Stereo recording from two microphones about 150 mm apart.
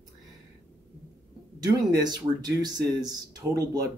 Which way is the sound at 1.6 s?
25° right (ahead or behind).